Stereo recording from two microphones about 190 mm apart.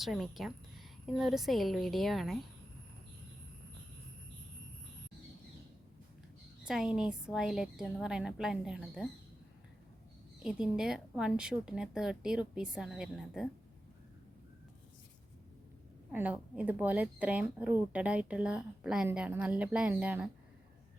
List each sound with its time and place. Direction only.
0.0 s a woman's voice: centre (ahead or behind)
6.7 s a woman's voice: 5° right (ahead or behind)
10.4 s a woman's voice: 5° right (ahead or behind)
16.1 s speech: 5° right (ahead or behind)